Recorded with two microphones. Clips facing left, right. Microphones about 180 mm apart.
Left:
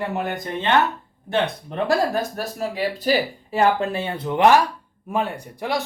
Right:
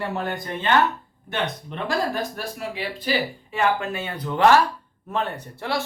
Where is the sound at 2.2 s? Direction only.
40° left (ahead or behind).